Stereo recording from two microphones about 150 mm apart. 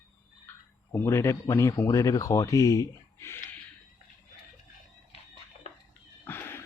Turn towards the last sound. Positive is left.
turn(degrees=15)  # may be behind; listen again after turning